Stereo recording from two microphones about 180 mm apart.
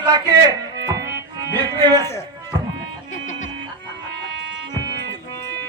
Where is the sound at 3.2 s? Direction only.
45° left (ahead or behind).